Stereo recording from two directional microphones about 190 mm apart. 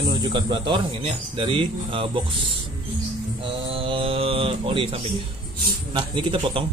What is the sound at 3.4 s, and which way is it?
Speech, 30° right (ahead or behind).